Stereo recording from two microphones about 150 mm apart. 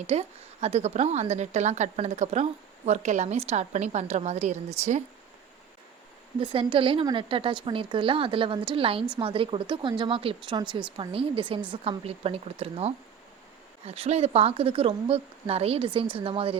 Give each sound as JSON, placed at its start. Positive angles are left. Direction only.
{"t": 0.1, "sound": "a woman's voice", "side_deg": -45}
{"t": 6.4, "sound": "a woman's voice", "side_deg": -35}